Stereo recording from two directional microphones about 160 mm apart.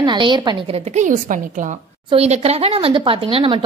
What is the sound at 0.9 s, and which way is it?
Speech, 55° right (ahead or behind).